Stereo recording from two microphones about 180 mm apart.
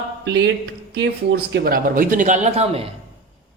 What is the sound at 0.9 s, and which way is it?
Speech, 65° right (ahead or behind).